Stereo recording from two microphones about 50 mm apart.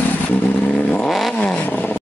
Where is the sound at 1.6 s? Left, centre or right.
Left.